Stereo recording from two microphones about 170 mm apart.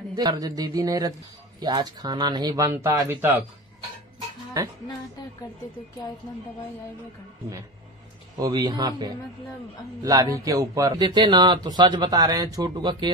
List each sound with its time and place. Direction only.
0.1 s a man's voice: 25° right (ahead or behind)
4.6 s a man's voice: 20° right (ahead or behind)
8.4 s a man's voice: 20° right (ahead or behind)